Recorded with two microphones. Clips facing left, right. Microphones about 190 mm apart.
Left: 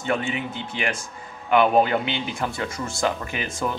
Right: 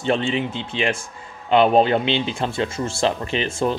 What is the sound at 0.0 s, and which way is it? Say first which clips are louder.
Speech: right 5 dB; 25° right (ahead or behind).